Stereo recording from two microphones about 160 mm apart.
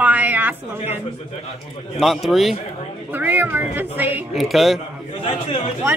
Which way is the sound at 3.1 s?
10° right (ahead or behind).